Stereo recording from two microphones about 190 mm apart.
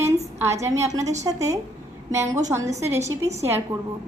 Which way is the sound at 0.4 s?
15° right (ahead or behind).